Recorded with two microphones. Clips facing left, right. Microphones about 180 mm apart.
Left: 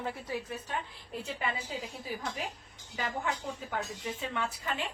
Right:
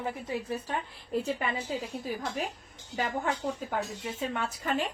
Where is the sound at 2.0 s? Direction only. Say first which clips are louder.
Right 4 dB; 45° right (ahead or behind).